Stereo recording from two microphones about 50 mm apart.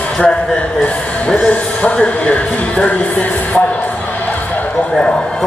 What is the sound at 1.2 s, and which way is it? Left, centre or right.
Speech, left.